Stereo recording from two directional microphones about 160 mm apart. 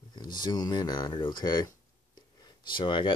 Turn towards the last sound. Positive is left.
turn(degrees=30)  # may be behind; listen again after turning